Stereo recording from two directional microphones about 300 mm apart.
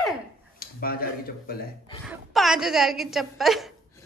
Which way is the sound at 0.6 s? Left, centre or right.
Left.